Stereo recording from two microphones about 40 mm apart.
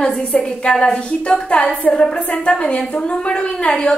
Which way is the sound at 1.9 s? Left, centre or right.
Centre.